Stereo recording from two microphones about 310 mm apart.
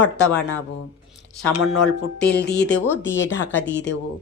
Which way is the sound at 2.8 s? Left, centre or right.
Centre.